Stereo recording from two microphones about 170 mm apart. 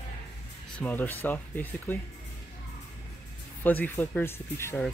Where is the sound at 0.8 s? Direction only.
10° left (ahead or behind).